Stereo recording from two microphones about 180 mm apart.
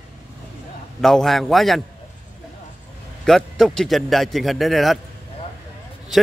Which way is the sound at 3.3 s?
Centre (ahead or behind).